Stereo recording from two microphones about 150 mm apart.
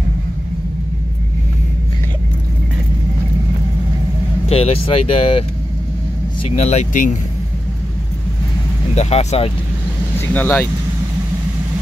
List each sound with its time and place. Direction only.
4.5 s speech: 40° left (ahead or behind)
6.5 s speech: 50° left (ahead or behind)
8.9 s speech: 45° left (ahead or behind)
10.1 s speech: 15° left (ahead or behind)